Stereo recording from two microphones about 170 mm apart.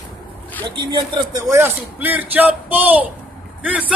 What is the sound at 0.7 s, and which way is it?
A man's voice, 25° right (ahead or behind).